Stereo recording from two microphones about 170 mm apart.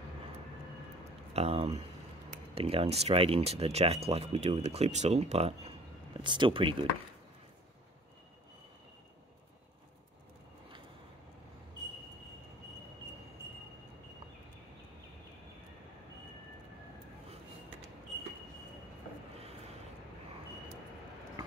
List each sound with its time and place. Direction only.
1.3 s speech: 35° right (ahead or behind)
6.2 s speech: 30° right (ahead or behind)